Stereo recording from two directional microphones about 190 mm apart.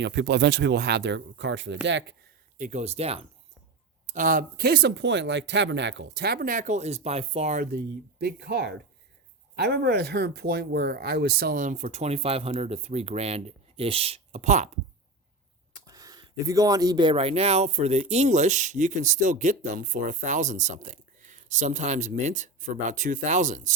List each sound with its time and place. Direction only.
0.0 s speech: 65° right (ahead or behind)
2.6 s speech: 40° right (ahead or behind)
4.0 s speech: 45° right (ahead or behind)
15.9 s speech: 20° right (ahead or behind); by 23.7 s 40° right (ahead or behind)